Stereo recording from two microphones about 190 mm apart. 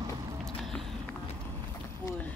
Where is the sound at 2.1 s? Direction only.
10° left (ahead or behind).